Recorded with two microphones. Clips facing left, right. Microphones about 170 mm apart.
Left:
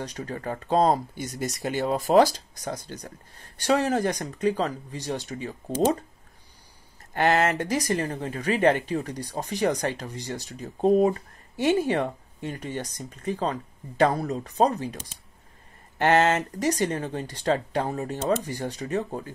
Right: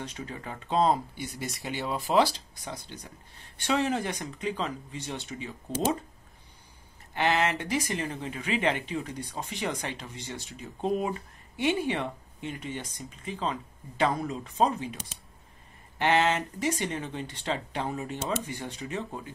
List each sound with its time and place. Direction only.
0.0 s speech: 40° left (ahead or behind)
7.2 s speech: 45° left (ahead or behind)
16.0 s speech: 45° left (ahead or behind)